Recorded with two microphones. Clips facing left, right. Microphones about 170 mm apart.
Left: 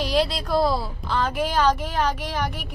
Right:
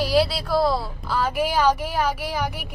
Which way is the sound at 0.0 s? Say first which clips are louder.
Right 2 dB; 5° right (ahead or behind).